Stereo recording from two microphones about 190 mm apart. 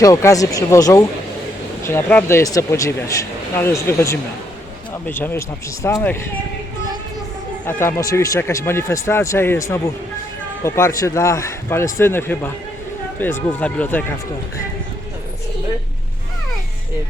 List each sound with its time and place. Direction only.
0.0 s speech: 15° left (ahead or behind)
7.6 s speech: 10° left (ahead or behind)